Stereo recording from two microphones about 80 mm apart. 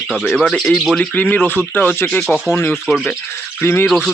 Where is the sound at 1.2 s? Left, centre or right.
Left.